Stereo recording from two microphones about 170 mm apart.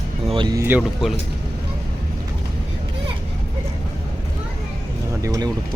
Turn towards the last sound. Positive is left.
turn(degrees=-20)  # may be behind; listen again after turning